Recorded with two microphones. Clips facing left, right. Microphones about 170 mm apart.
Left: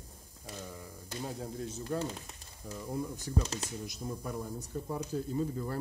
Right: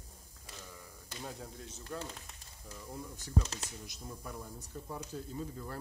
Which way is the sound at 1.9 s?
45° left (ahead or behind).